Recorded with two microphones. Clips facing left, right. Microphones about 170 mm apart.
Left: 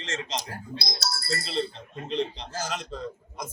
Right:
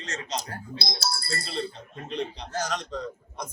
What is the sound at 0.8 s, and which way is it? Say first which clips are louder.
Speech: right 4 dB; 25° right (ahead or behind).